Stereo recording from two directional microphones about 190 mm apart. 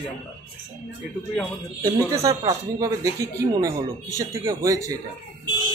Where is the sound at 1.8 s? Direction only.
15° right (ahead or behind).